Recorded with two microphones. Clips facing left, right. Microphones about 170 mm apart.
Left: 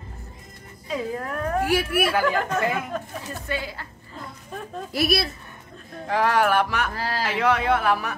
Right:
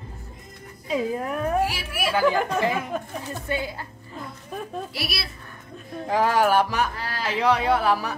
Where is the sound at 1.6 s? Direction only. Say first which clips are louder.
Left 9 dB; 55° left (ahead or behind).